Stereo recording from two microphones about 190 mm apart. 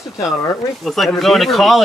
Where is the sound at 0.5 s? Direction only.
Centre (ahead or behind).